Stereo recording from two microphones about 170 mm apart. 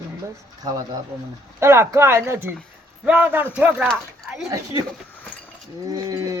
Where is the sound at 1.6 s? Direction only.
15° right (ahead or behind).